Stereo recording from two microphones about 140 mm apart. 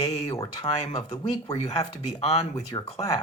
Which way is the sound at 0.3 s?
25° left (ahead or behind).